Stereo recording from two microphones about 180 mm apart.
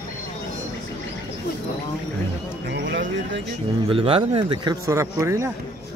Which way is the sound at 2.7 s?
90° right.